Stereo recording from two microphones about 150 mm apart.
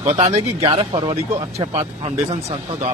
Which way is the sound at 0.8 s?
35° right (ahead or behind).